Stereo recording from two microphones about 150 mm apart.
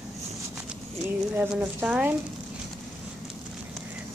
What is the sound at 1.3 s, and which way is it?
Speech, 10° right (ahead or behind).